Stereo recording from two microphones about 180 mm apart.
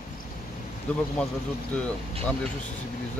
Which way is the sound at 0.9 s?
5° left (ahead or behind).